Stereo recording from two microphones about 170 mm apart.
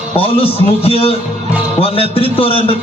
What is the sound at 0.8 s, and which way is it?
A man's voice, 35° left (ahead or behind).